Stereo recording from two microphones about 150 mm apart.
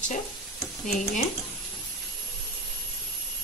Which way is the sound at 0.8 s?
55° left (ahead or behind).